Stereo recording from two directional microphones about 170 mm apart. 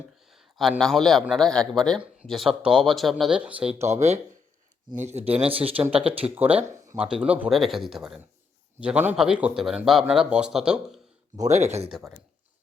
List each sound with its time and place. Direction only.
0.3 s a man's voice: centre (ahead or behind)
3.8 s speech: 40° right (ahead or behind)
6.6 s speech: 15° right (ahead or behind)
11.4 s speech: 40° right (ahead or behind)
11.9 s speech: centre (ahead or behind)